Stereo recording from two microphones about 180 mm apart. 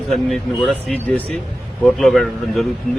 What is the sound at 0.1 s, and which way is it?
Speech, centre (ahead or behind).